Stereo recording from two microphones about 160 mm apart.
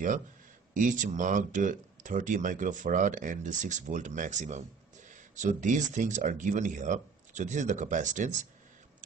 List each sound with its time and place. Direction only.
0.7 s speech: 50° right (ahead or behind)